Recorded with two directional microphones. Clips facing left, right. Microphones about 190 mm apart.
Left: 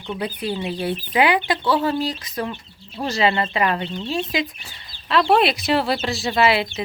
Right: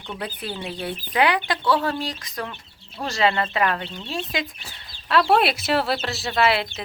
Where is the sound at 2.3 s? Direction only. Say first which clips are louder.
Left 5 dB; 15° left (ahead or behind).